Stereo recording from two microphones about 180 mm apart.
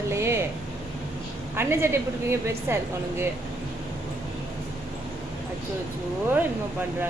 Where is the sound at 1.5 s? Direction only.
15° right (ahead or behind).